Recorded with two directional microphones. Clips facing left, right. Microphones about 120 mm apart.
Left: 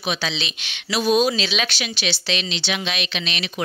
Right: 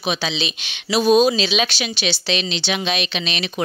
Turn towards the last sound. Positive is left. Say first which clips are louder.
# right 3 dB
turn(degrees=-30)  # may be behind; listen again after turning